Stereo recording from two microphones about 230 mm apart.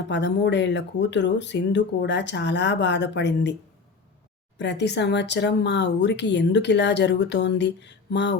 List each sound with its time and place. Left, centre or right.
0.1 s speech: left
4.5 s speech: left